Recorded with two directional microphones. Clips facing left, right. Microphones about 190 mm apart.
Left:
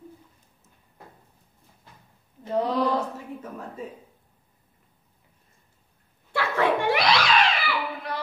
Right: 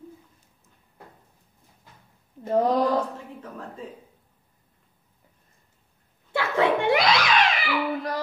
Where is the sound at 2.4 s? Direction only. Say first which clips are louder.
Right 3 dB; 45° right (ahead or behind).